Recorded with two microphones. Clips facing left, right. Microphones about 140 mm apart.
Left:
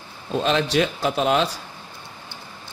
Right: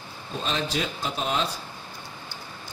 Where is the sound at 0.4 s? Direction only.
75° left (ahead or behind).